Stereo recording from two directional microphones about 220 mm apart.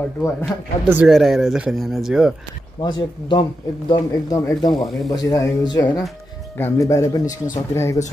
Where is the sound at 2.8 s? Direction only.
20° left (ahead or behind).